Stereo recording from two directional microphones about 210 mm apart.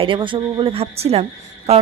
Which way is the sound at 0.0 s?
25° right (ahead or behind).